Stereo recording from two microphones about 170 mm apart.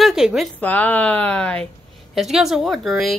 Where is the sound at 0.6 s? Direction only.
10° left (ahead or behind).